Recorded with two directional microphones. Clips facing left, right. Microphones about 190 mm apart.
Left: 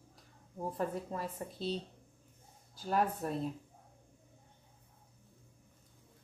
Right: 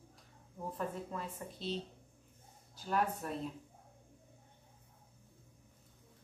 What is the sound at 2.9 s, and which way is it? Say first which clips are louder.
Speech: left 2 dB; 35° left (ahead or behind).